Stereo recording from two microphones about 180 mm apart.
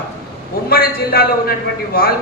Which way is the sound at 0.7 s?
55° left (ahead or behind).